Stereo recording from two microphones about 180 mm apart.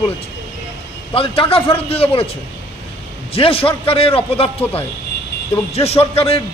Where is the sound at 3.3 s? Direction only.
30° left (ahead or behind).